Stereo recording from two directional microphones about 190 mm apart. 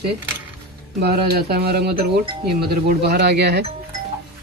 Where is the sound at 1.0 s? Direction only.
55° right (ahead or behind).